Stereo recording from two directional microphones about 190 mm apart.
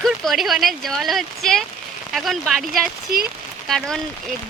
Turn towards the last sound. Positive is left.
turn(degrees=0)  # may be behind; listen again after turning